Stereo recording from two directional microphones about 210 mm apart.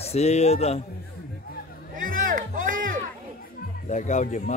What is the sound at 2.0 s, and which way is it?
Music, 40° right (ahead or behind).